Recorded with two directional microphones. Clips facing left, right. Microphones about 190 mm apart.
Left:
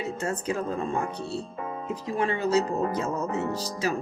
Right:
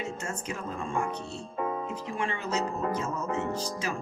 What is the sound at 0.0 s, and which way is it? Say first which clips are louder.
Speech: left 5 dB; 35° left (ahead or behind).